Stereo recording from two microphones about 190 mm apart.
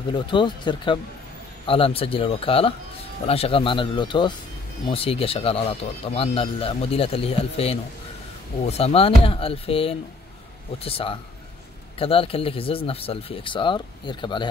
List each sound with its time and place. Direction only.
0.1 s speech: 25° left (ahead or behind)